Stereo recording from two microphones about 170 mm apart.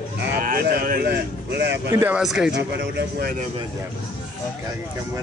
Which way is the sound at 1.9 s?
15° right (ahead or behind).